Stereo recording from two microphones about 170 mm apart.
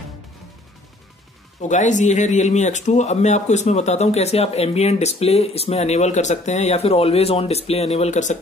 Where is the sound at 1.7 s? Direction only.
45° left (ahead or behind).